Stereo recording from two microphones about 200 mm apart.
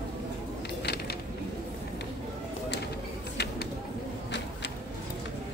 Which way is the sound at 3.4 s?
55° left (ahead or behind).